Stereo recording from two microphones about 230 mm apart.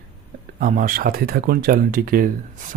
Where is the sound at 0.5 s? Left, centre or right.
Right.